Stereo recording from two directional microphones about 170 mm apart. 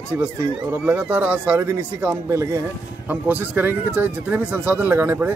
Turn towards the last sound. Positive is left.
turn(degrees=-10)  # may be behind; listen again after turning